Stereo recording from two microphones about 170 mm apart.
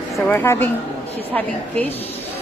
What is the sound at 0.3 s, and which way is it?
Speech, 10° left (ahead or behind).